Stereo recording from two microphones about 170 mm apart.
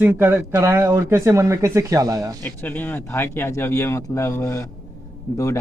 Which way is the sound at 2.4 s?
10° left (ahead or behind).